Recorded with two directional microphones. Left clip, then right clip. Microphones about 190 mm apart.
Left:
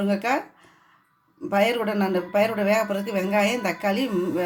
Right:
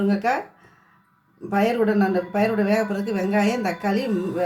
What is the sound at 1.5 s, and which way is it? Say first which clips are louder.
Speech: right 1 dB; 50° left (ahead or behind).